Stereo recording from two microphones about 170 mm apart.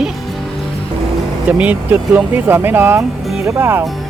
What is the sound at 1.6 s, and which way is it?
Speech, 10° right (ahead or behind).